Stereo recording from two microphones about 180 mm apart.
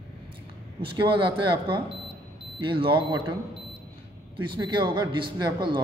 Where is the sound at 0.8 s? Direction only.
30° right (ahead or behind).